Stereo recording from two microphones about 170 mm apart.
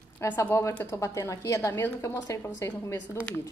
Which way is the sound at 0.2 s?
15° left (ahead or behind).